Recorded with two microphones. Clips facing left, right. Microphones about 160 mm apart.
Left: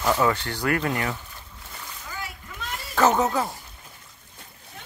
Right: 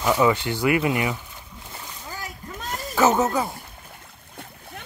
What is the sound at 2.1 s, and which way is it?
Children playing, 40° right (ahead or behind).